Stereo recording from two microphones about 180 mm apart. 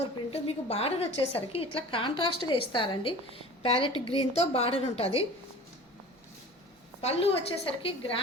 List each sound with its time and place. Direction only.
0.3 s a woman's voice: 35° left (ahead or behind)
7.0 s a woman's voice: 35° left (ahead or behind)